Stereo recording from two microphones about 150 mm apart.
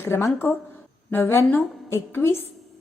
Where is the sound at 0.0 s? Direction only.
20° left (ahead or behind).